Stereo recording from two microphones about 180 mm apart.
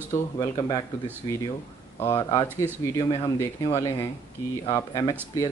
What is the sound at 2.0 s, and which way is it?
Speech, 15° left (ahead or behind).